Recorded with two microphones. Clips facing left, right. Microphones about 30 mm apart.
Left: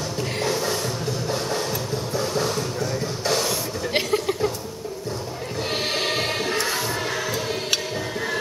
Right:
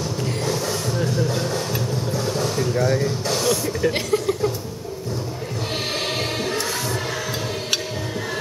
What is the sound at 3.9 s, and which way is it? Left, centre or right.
Chuckle, centre.